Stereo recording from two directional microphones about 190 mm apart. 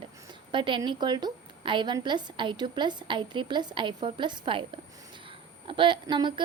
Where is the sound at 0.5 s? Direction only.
25° right (ahead or behind).